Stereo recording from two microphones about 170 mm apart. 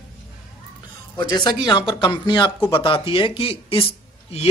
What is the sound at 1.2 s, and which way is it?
Speech, 25° left (ahead or behind).